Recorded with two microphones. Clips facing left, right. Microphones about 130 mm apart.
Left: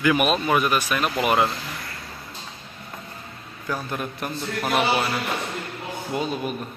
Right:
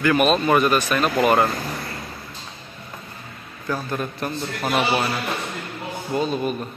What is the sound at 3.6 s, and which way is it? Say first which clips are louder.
Speech: right 3 dB; 10° left (ahead or behind).